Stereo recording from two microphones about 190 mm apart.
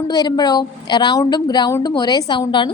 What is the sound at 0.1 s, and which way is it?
A woman's voice, 20° left (ahead or behind).